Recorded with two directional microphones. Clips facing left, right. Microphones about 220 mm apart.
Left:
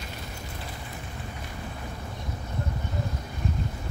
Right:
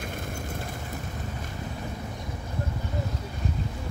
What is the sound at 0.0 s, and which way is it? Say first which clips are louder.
Vehicle: right 5 dB; 50° right (ahead or behind).